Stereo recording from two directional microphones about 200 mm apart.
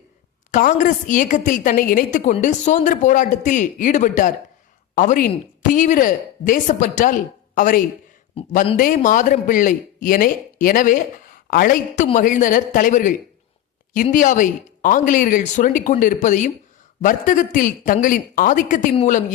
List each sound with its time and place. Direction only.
0.5 s a woman's voice: 40° left (ahead or behind)
8.4 s a man's voice: 30° left (ahead or behind)
8.7 s a woman's voice: 40° left (ahead or behind)